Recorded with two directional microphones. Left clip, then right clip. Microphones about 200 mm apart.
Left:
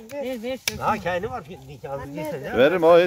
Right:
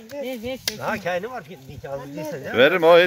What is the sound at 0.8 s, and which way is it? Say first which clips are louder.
Speech: left 2 dB; 15° left (ahead or behind).